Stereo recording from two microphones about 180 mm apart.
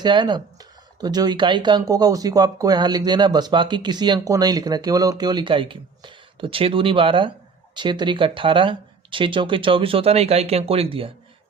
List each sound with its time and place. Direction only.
0.0 s speech: 25° right (ahead or behind)